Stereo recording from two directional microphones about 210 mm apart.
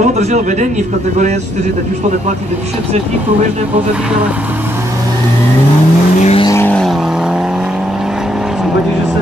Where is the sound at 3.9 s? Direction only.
5° right (ahead or behind).